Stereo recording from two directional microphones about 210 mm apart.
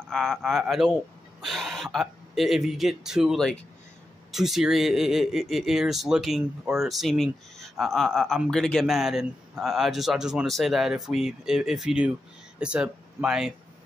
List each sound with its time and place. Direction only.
0.1 s speech: centre (ahead or behind)